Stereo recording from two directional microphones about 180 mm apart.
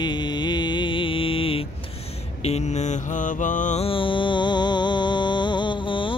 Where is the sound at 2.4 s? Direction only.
35° left (ahead or behind).